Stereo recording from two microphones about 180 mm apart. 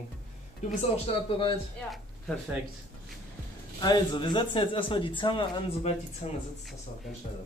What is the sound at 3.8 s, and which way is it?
Speech, 25° left (ahead or behind).